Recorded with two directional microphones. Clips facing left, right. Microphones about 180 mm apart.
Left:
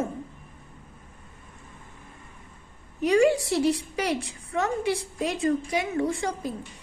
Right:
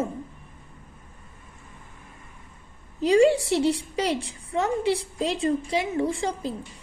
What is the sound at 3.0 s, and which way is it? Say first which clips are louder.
A woman's voice: right 2 dB; 30° right (ahead or behind).